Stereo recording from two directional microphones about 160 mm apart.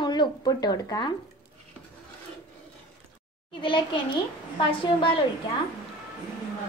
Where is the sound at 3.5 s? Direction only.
30° left (ahead or behind).